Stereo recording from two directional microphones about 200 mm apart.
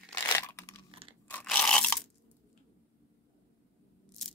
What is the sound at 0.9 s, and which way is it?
Crunch, 25° right (ahead or behind).